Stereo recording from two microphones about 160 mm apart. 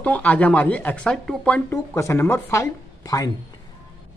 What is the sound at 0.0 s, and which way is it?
Speech, 10° left (ahead or behind).